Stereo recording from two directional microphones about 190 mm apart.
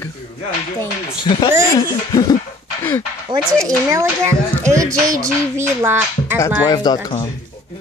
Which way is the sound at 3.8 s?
15° right (ahead or behind).